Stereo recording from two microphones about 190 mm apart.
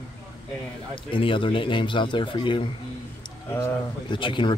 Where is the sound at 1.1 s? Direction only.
25° left (ahead or behind).